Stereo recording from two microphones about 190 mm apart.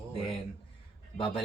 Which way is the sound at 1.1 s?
25° left (ahead or behind).